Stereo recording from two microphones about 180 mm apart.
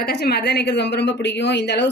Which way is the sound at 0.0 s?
60° left (ahead or behind).